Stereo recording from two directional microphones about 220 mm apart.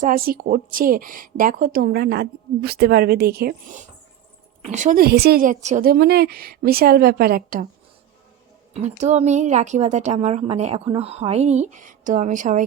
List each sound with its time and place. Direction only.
0.0 s a woman's voice: 40° right (ahead or behind)
8.7 s a woman's voice: 30° right (ahead or behind)